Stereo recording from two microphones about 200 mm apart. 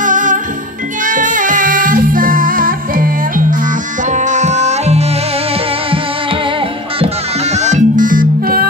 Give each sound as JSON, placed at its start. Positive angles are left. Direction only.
{"t": 0.0, "sound": "music", "side_deg": -40}
{"t": 7.5, "sound": "music", "side_deg": -35}